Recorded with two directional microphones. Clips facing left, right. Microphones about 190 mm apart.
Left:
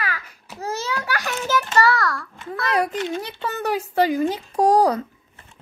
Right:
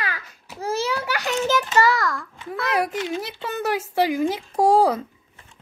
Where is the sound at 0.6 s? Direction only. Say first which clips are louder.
Right 3 dB; 10° right (ahead or behind).